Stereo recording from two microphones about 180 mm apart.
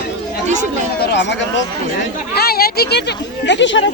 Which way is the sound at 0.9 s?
70° left (ahead or behind).